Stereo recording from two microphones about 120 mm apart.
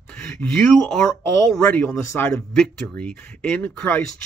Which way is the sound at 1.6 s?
20° left (ahead or behind).